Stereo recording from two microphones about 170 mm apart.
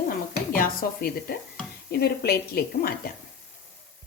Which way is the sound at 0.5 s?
55° left (ahead or behind).